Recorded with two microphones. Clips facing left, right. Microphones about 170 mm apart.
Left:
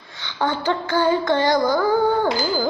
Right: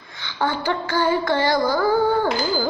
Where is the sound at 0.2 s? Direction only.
20° left (ahead or behind).